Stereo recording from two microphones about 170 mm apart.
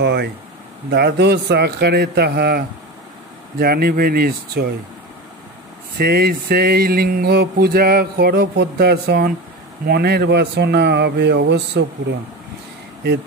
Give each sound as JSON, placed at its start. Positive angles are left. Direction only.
{"t": 0.0, "sound": "speech", "side_deg": -90}
{"t": 0.8, "sound": "a man's voice", "side_deg": -75}
{"t": 5.9, "sound": "speech", "side_deg": -70}